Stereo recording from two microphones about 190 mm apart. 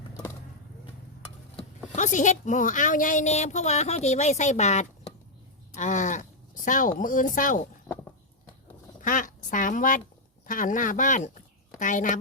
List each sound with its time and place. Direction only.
1.9 s a woman's voice: 40° left (ahead or behind)
9.0 s quack: 45° left (ahead or behind)
10.4 s speech: 45° left (ahead or behind)